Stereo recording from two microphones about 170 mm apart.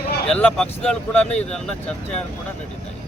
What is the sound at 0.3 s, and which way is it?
Speech, 5° left (ahead or behind).